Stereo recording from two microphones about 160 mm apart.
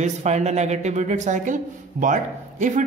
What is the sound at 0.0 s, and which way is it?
A man's voice, 45° right (ahead or behind).